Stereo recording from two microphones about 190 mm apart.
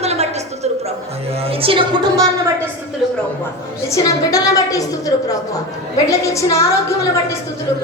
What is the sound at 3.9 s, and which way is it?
A woman's voice, 20° left (ahead or behind).